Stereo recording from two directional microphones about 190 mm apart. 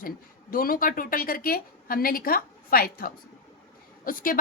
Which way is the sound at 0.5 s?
50° left (ahead or behind).